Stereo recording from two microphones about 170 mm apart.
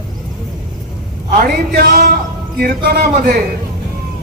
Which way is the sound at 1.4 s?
65° right (ahead or behind).